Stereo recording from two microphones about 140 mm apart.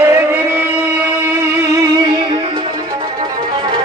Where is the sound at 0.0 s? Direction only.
15° right (ahead or behind).